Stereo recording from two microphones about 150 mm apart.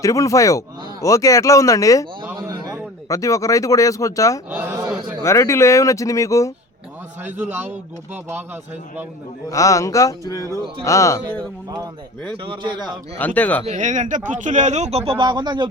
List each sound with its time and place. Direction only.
0.0 s speech: 20° left (ahead or behind)
2.5 s a sound: 25° right (ahead or behind)
3.1 s speech: 20° left (ahead or behind)
4.4 s a sound: 10° right (ahead or behind)
5.2 s speech: 20° left (ahead or behind)
7.3 s speech: 10° right (ahead or behind)
9.5 s speech: 20° left (ahead or behind)
12.5 s speech: 30° right (ahead or behind)
13.1 s speech: 10° left (ahead or behind)
13.7 s speech: 55° right (ahead or behind); by 15.6 s 30° right (ahead or behind)